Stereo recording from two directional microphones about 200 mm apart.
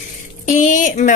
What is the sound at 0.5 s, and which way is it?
Speech, 40° left (ahead or behind).